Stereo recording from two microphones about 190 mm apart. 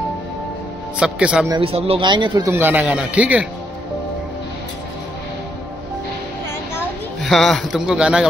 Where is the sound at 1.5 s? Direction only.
30° right (ahead or behind); by 3.5 s 5° right (ahead or behind).